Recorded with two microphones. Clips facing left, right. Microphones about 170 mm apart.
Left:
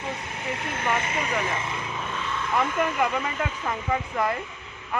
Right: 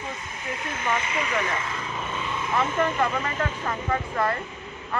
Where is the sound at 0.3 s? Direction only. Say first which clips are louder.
Left 2 dB; 65° left (ahead or behind); by 1.3 s 45° left (ahead or behind).